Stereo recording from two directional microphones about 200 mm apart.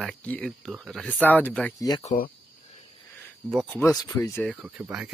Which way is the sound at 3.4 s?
Centre (ahead or behind).